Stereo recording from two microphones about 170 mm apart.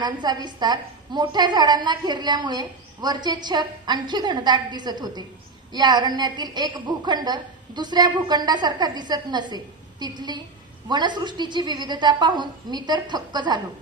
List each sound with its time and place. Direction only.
0.0 s a woman's voice: 25° right (ahead or behind)